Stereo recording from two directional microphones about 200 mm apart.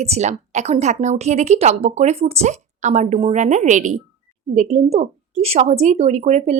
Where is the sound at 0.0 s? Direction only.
35° right (ahead or behind).